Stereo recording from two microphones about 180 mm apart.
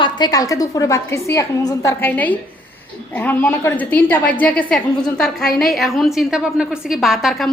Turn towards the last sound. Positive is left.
turn(degrees=0)  # may be behind; listen again after turning